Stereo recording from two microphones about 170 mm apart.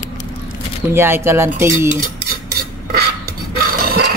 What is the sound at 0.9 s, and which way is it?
Speech, 15° right (ahead or behind).